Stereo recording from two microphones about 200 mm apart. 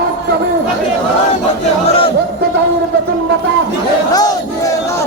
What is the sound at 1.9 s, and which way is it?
Crowd, 30° left (ahead or behind).